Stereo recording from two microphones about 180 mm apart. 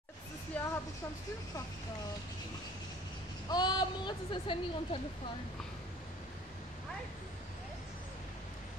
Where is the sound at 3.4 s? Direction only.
25° left (ahead or behind).